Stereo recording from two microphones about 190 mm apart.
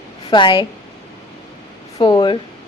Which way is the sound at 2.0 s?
25° left (ahead or behind).